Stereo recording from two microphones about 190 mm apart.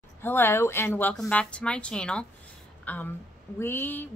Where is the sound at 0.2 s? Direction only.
10° left (ahead or behind).